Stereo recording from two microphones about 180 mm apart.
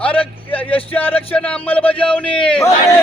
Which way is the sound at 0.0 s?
10° left (ahead or behind).